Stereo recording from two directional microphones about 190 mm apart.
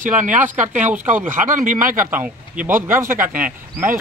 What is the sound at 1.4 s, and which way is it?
Speech, 45° right (ahead or behind).